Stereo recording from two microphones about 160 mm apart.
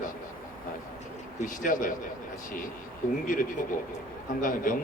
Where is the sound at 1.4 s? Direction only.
55° left (ahead or behind).